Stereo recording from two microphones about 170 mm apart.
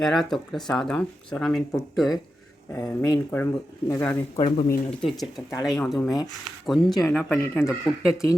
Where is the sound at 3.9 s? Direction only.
15° left (ahead or behind).